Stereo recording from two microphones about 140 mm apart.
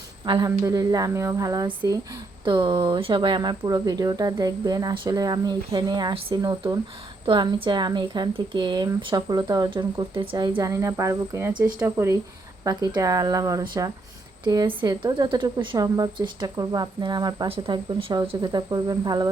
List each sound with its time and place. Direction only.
0.3 s a woman's voice: 30° right (ahead or behind)